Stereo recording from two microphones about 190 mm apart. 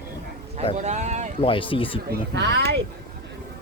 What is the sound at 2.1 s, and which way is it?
Speech, 65° right (ahead or behind).